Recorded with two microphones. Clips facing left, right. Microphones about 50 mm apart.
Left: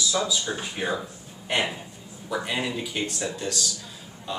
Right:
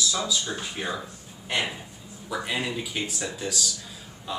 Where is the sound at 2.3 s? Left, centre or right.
Centre.